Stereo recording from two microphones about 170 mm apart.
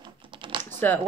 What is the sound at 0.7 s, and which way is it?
Speech, 10° left (ahead or behind).